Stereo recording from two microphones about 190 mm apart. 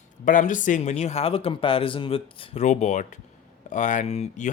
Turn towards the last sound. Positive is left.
turn(degrees=35)  # may be behind; listen again after turning